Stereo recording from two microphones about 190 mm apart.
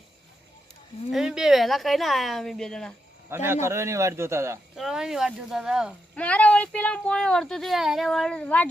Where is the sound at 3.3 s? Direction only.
10° right (ahead or behind).